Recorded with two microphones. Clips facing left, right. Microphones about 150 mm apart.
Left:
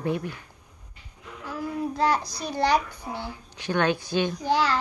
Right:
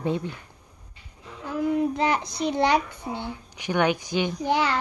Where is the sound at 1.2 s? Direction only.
25° right (ahead or behind).